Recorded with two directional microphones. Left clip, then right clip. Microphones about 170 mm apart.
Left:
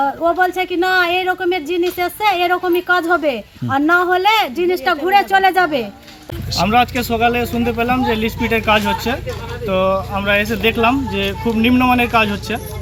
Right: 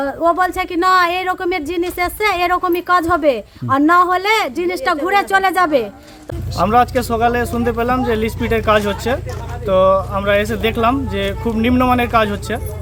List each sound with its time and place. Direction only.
0.0 s a woman's voice: 25° right (ahead or behind)